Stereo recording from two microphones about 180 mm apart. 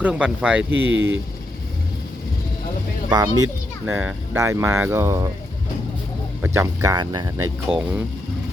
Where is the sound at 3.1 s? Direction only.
20° right (ahead or behind).